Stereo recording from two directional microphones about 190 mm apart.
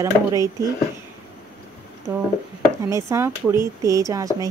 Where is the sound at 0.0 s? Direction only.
15° right (ahead or behind).